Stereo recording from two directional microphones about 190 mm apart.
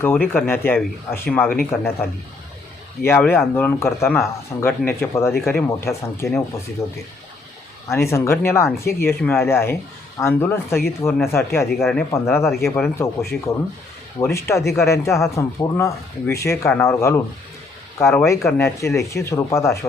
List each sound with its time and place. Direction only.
0.0 s speech: 10° left (ahead or behind)
3.0 s speech: 10° left (ahead or behind)